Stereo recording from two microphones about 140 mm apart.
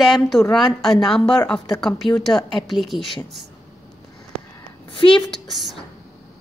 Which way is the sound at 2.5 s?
35° left (ahead or behind).